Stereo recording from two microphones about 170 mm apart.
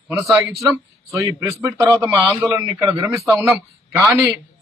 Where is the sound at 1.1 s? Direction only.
15° right (ahead or behind).